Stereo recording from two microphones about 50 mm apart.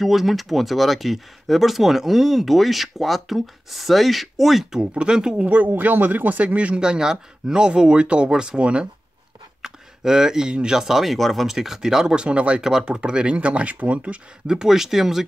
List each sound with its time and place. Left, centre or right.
0.0 s speech: centre
4.9 s speech: centre
5.5 s speech: right
6.4 s speech: right
6.8 s speech: centre
9.6 s speech: centre
11.4 s speech: centre; by 14.2 s right
14.5 s speech: centre